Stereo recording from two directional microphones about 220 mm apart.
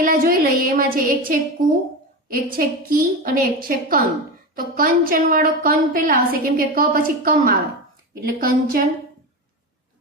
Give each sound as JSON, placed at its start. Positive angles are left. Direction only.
{"t": 0.0, "sound": "music", "side_deg": -40}
{"t": 2.2, "sound": "a woman's voice", "side_deg": -40}